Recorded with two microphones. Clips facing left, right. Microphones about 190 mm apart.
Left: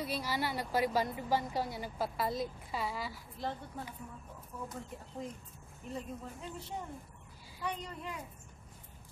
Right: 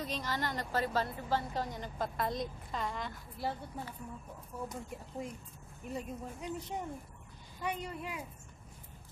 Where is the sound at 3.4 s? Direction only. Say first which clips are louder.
Right 1 dB; 10° right (ahead or behind).